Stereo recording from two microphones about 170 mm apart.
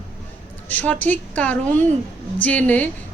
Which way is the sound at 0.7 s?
10° left (ahead or behind).